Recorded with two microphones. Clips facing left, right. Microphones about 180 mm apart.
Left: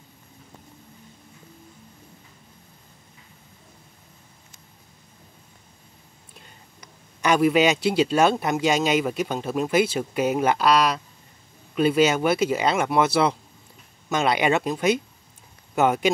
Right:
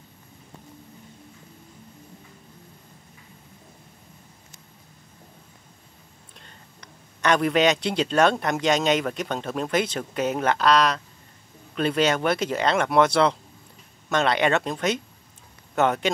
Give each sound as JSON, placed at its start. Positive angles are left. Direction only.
{"t": 6.3, "sound": "speech", "side_deg": 10}